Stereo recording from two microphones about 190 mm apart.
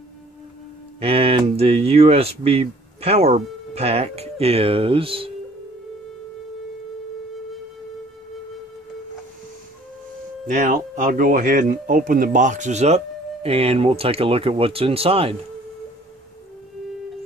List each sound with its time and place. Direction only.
1.0 s speech: 30° right (ahead or behind)
10.4 s speech: 40° right (ahead or behind)